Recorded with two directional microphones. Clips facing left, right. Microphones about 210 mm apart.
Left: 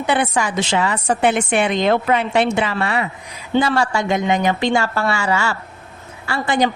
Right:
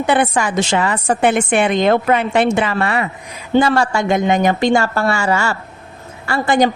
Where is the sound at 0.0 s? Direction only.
50° right (ahead or behind).